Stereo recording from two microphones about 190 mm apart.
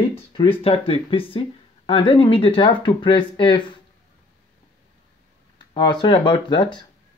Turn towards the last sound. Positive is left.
turn(degrees=25)  # may be behind; listen again after turning